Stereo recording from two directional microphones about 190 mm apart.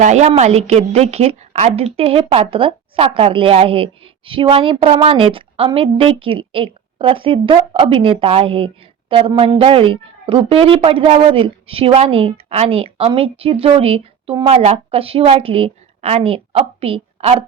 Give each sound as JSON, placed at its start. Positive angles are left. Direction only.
{"t": 0.0, "sound": "a woman's voice", "side_deg": -40}